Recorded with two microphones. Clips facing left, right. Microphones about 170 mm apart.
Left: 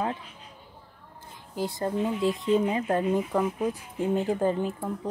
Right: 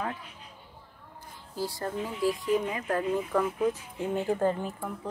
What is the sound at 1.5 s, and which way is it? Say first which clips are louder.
Speech: left 4 dB; 20° left (ahead or behind).